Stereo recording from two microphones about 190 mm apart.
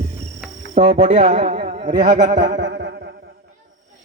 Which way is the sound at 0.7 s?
30° right (ahead or behind).